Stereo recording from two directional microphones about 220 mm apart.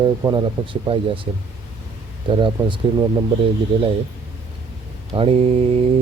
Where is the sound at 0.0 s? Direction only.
20° right (ahead or behind).